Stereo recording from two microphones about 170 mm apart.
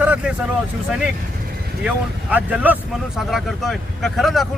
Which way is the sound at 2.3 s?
10° right (ahead or behind).